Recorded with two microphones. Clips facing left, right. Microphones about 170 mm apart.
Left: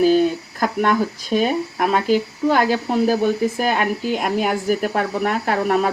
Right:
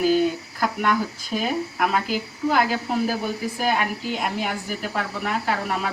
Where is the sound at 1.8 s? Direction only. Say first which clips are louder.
Left 7 dB; 40° left (ahead or behind).